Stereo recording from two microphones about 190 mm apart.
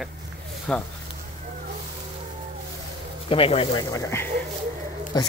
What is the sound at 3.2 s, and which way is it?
Speech, 30° left (ahead or behind).